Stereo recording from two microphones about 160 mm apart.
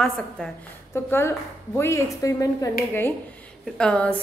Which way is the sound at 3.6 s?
5° left (ahead or behind).